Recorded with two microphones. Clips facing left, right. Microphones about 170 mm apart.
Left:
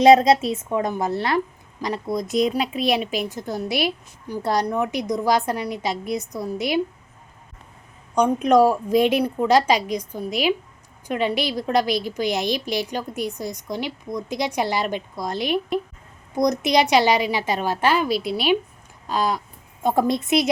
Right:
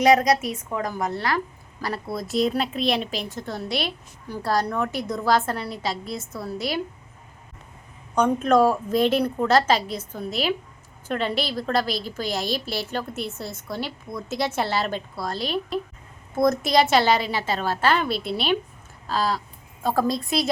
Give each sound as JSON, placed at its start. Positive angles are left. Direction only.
{"t": 0.0, "sound": "a woman's voice", "side_deg": 25}
{"t": 1.8, "sound": "a woman's voice", "side_deg": 15}
{"t": 3.3, "sound": "a woman's voice", "side_deg": 20}
{"t": 3.7, "sound": "a woman's voice", "side_deg": 5}
{"t": 4.3, "sound": "a woman's voice", "side_deg": 15}
{"t": 8.4, "sound": "a woman's voice", "side_deg": 15}
{"t": 17.9, "sound": "a woman's voice", "side_deg": 0}
{"t": 19.0, "sound": "a woman's voice", "side_deg": 20}